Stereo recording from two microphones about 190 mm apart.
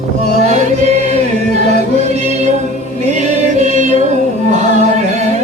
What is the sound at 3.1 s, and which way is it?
Chant, 40° right (ahead or behind).